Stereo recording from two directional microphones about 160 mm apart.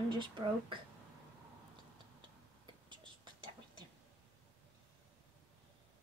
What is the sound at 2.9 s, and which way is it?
Whispering, 30° right (ahead or behind).